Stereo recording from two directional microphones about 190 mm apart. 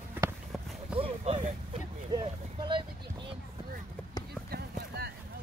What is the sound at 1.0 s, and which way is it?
Speech, 35° right (ahead or behind).